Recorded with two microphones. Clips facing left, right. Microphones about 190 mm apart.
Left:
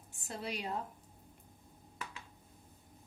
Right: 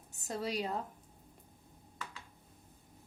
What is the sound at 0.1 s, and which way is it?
Speech, 40° right (ahead or behind).